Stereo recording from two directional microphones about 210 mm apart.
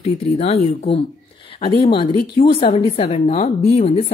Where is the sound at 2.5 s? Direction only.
25° left (ahead or behind).